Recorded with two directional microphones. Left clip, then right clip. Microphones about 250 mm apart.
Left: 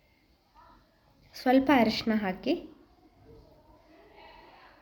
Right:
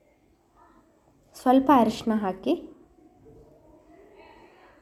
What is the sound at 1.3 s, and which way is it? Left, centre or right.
A woman's voice, centre.